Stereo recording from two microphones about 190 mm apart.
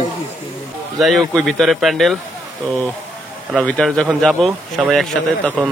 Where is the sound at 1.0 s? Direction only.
Centre (ahead or behind).